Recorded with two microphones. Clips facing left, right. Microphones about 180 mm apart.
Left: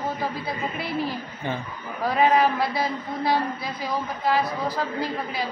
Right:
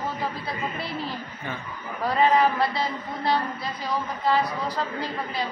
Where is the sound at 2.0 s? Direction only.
10° left (ahead or behind).